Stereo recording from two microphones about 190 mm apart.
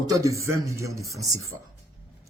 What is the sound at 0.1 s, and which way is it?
Speech, 15° right (ahead or behind).